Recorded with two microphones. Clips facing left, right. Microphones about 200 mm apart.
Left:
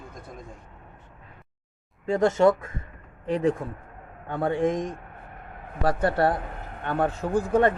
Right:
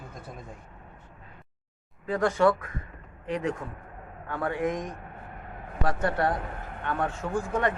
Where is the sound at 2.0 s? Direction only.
25° left (ahead or behind).